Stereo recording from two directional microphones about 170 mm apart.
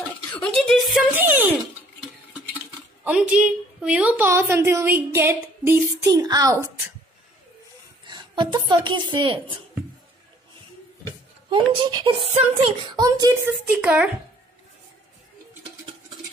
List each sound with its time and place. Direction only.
0.0 s a sound: 10° left (ahead or behind)
1.1 s a child's voice: 10° right (ahead or behind)
8.1 s speech: 25° right (ahead or behind)
11.5 s speech: 25° right (ahead or behind)
13.5 s a woman's voice: 5° right (ahead or behind)